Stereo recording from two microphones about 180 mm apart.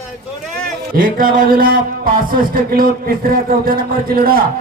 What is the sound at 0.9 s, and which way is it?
A man's voice, 50° right (ahead or behind).